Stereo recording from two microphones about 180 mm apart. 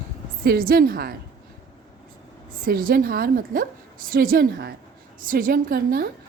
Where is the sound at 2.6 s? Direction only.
55° right (ahead or behind).